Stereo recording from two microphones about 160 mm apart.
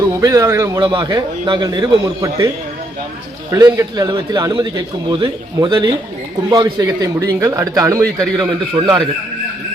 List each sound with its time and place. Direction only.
0.2 s a man's voice: 20° right (ahead or behind)
0.8 s a man's voice: 30° right (ahead or behind)
3.5 s a man's voice: 20° right (ahead or behind)